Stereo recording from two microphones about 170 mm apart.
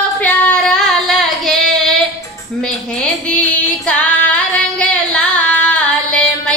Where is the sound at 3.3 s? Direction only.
5° left (ahead or behind).